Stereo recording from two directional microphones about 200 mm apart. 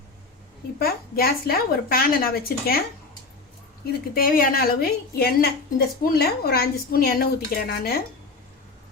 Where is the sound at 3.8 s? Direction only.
45° left (ahead or behind).